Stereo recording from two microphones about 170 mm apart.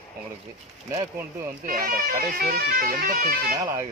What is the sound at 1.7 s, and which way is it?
Speech, 60° right (ahead or behind).